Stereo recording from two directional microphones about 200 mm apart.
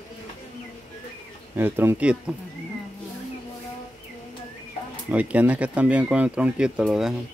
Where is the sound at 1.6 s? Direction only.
10° right (ahead or behind).